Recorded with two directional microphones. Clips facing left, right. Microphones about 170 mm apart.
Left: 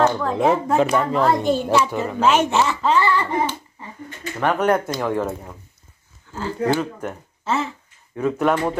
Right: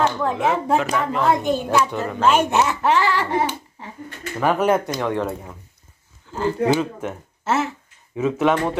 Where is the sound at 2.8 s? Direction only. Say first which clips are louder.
Even; 90° right.